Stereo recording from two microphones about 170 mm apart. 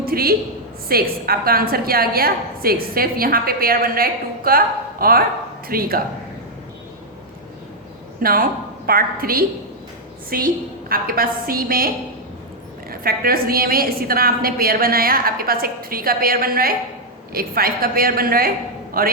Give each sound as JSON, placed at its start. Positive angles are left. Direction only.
{"t": 0.0, "sound": "a sound", "side_deg": -60}
{"t": 0.9, "sound": "a woman's voice", "side_deg": -60}
{"t": 8.2, "sound": "a woman's voice", "side_deg": -60}
{"t": 12.9, "sound": "a woman's voice", "side_deg": -60}